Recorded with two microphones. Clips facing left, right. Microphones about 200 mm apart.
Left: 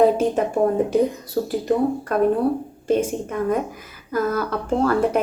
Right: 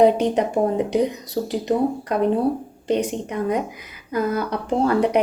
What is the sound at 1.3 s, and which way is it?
A woman's voice, 20° right (ahead or behind).